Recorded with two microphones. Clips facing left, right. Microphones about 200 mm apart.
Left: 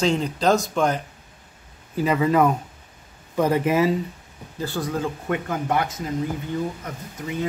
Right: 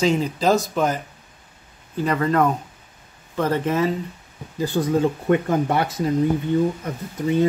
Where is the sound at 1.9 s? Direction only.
5° left (ahead or behind).